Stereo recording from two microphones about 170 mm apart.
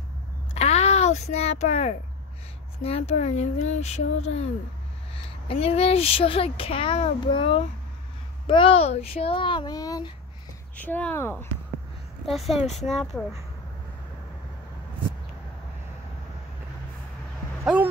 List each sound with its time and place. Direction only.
0.6 s a sound: 40° left (ahead or behind)
2.8 s a child's voice: 35° left (ahead or behind)
5.5 s a child's voice: 35° left (ahead or behind)
10.8 s speech: 10° left (ahead or behind)
12.3 s speech: centre (ahead or behind)
12.5 s a child's voice: 40° left (ahead or behind)
12.8 s speech: centre (ahead or behind)